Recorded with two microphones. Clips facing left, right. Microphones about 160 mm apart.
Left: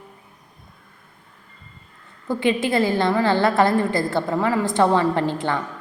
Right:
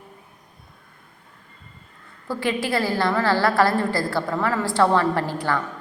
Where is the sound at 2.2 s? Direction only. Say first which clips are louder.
Left 4 dB; 20° left (ahead or behind).